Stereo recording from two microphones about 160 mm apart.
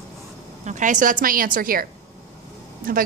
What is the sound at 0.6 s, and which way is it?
A woman's voice, 50° right (ahead or behind).